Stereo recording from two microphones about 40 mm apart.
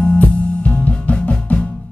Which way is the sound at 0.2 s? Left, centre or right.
Left.